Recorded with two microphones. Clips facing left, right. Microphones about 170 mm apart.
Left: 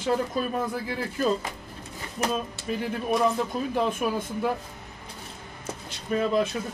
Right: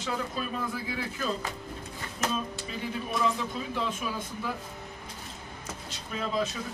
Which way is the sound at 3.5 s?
50° left (ahead or behind).